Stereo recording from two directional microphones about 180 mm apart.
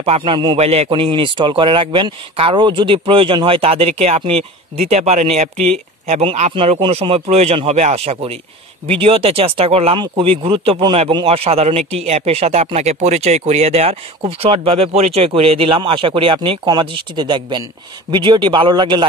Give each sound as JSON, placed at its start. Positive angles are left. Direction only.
{"t": 0.0, "sound": "a man's voice", "side_deg": -30}